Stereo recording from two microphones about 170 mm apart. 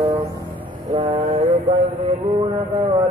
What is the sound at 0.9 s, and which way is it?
Mantra, 25° right (ahead or behind).